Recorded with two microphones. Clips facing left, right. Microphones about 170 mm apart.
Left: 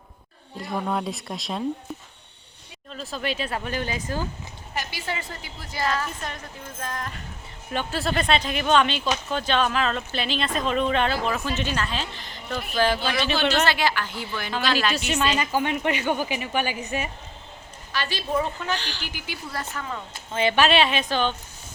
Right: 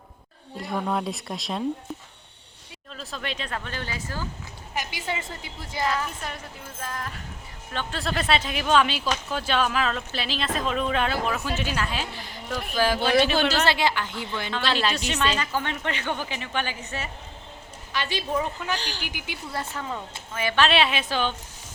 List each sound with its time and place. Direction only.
0.6 s speech: centre (ahead or behind); by 4.3 s 20° left (ahead or behind)
4.7 s a woman's voice: 15° right (ahead or behind)
6.2 s speech: 5° right (ahead or behind)
7.7 s speech: 10° left (ahead or behind); by 13.0 s 10° right (ahead or behind)
13.7 s a woman's voice: 25° right (ahead or behind)
14.9 s speech: 5° left (ahead or behind)
17.9 s a woman's voice: 20° right (ahead or behind)
20.3 s a woman's voice: 25° left (ahead or behind)
20.6 s speech: centre (ahead or behind)